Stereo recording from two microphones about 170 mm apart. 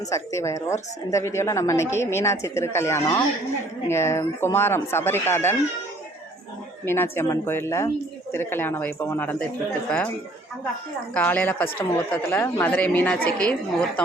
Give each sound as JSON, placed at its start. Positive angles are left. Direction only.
{"t": 0.1, "sound": "speech", "side_deg": 20}
{"t": 6.8, "sound": "speech", "side_deg": 15}
{"t": 11.1, "sound": "speech", "side_deg": 10}